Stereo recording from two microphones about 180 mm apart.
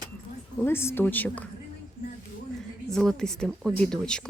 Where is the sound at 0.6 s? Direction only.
15° left (ahead or behind).